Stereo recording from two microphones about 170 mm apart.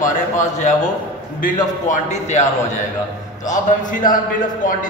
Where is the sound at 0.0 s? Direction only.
45° left (ahead or behind).